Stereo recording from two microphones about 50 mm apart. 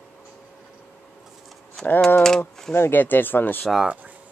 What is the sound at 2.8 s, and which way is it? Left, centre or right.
Speech, left.